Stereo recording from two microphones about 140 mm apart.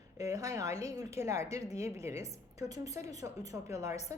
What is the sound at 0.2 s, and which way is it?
A woman's voice, 25° right (ahead or behind).